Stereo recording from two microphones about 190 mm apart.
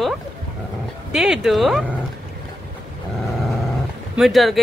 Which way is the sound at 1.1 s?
Centre (ahead or behind).